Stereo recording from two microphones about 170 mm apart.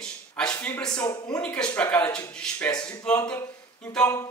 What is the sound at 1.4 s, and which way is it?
A man's voice, 5° left (ahead or behind).